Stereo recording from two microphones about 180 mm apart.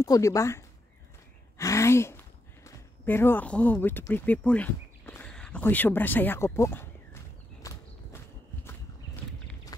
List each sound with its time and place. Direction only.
0.0 s speech: 20° left (ahead or behind)
7.6 s clip-clop: 20° left (ahead or behind)